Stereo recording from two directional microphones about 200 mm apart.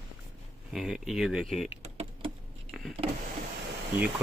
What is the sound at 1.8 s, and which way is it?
Typing, 30° right (ahead or behind).